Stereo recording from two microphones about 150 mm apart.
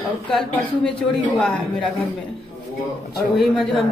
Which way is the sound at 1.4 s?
5° left (ahead or behind).